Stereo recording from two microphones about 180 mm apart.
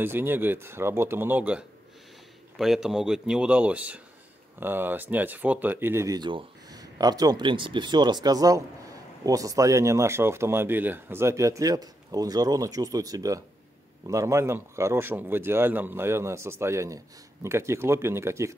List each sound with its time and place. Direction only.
0.0 s a man's voice: 10° right (ahead or behind)